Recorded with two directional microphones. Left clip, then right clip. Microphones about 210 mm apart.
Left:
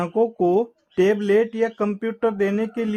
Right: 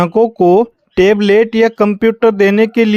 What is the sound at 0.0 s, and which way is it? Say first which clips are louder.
Speech: right 10 dB; 35° right (ahead or behind).